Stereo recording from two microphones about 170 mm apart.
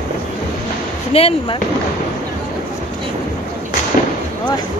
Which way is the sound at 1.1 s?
35° left (ahead or behind).